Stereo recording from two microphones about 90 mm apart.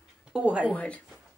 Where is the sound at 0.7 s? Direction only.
15° left (ahead or behind).